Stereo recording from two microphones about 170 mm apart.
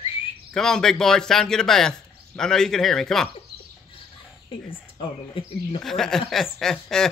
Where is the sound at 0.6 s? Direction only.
5° left (ahead or behind).